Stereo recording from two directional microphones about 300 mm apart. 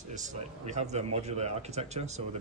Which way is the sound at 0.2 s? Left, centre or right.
Right.